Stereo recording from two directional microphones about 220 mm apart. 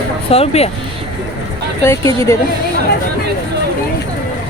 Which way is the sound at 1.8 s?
10° left (ahead or behind).